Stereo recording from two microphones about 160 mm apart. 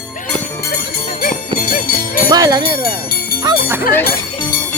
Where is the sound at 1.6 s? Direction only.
65° left (ahead or behind).